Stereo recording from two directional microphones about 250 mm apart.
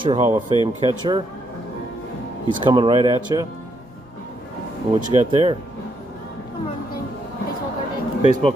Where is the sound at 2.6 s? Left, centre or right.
Centre.